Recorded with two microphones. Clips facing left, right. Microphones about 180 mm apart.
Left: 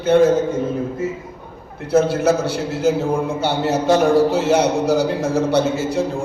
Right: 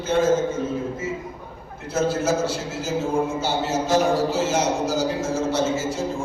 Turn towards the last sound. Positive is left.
turn(degrees=60)  # may be behind; listen again after turning